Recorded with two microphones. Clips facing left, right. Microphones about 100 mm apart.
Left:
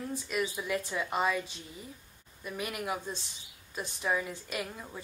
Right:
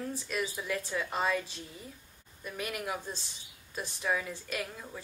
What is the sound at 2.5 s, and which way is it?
Speech, 10° left (ahead or behind).